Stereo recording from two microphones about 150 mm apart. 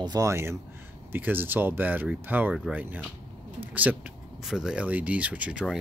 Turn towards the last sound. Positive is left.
turn(degrees=-5)  # may be behind; listen again after turning